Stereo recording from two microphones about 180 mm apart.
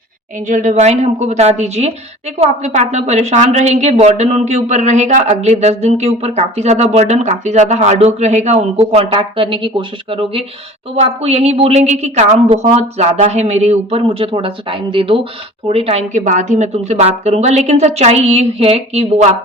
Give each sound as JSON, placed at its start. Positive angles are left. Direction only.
{"t": 0.4, "sound": "speech", "side_deg": -45}